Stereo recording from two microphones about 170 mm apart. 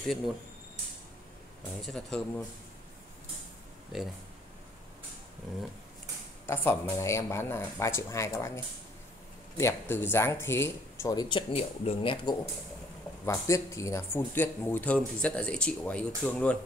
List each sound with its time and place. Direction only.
1.8 s speech: centre (ahead or behind)
3.9 s speech: 5° right (ahead or behind)
6.4 s speech: 15° left (ahead or behind); by 12.4 s 30° left (ahead or behind)
13.2 s speech: 20° left (ahead or behind)